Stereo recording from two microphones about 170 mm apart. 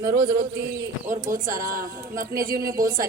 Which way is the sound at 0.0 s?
55° right (ahead or behind).